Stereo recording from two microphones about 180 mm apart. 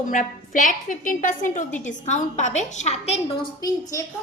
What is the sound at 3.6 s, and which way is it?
Speech, 20° left (ahead or behind).